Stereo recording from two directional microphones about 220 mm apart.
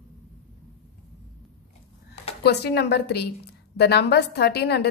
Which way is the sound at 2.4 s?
50° left (ahead or behind).